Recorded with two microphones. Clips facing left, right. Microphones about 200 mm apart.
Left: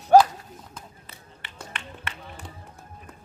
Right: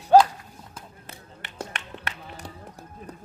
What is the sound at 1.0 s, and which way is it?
Music, 45° right (ahead or behind).